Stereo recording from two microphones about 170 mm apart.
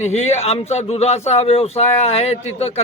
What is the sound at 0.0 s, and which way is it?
A man's voice, 40° left (ahead or behind).